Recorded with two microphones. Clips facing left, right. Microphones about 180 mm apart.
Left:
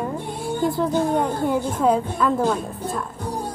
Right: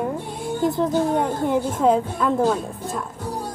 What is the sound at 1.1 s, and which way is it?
Speech, 20° right (ahead or behind).